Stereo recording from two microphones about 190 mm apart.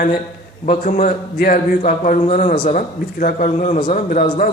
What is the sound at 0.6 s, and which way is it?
A man's voice, 45° left (ahead or behind).